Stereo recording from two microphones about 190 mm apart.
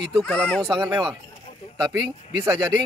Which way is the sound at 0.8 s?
20° right (ahead or behind).